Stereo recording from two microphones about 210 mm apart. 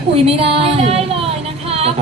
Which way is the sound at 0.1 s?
25° right (ahead or behind).